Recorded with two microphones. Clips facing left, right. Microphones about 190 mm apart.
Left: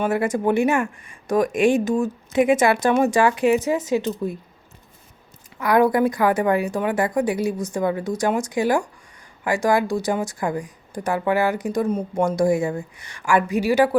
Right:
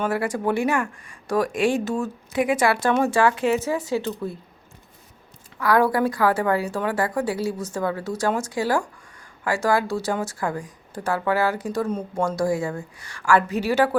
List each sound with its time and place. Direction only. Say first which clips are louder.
0.0 s speech: left 3 dB; 20° left (ahead or behind)
5.5 s speech: left 2 dB; 20° left (ahead or behind)